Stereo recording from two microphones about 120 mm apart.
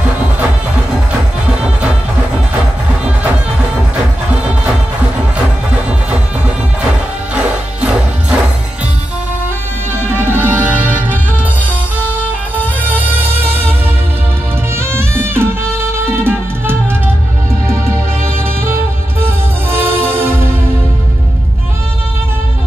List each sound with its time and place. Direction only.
7.3 s music: 10° right (ahead or behind)
10.2 s music: 15° right (ahead or behind)
14.8 s music: 20° right (ahead or behind)